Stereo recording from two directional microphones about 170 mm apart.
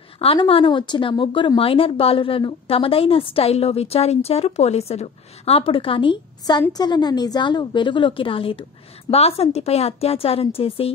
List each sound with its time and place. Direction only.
0.2 s a woman's voice: 35° left (ahead or behind)